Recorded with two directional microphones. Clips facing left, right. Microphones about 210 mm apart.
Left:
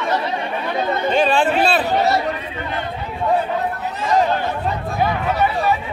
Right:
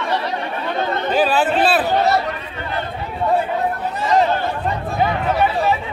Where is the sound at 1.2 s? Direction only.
5° right (ahead or behind).